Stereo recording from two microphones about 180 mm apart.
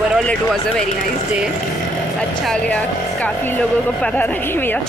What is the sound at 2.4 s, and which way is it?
Speech, 5° left (ahead or behind).